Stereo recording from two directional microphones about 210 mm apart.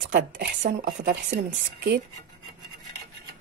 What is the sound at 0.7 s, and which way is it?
A woman's voice, 40° right (ahead or behind).